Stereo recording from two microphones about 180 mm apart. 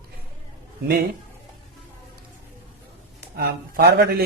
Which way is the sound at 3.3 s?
65° right (ahead or behind).